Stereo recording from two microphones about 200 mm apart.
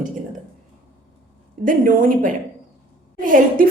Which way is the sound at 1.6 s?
45° right (ahead or behind).